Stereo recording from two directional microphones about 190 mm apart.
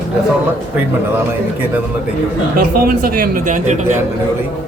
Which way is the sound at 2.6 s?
55° right (ahead or behind).